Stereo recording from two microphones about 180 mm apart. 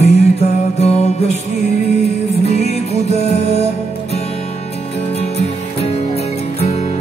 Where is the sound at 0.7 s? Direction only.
35° left (ahead or behind).